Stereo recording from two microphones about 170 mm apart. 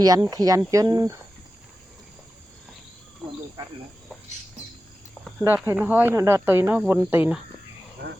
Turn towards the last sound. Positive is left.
turn(degrees=-10)  # may be behind; listen again after turning